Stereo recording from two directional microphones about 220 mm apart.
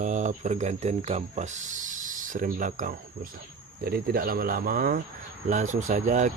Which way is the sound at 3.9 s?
40° right (ahead or behind).